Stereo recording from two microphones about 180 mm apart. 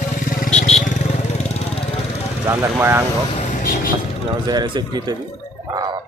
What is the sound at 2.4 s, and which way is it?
Speech, 15° right (ahead or behind).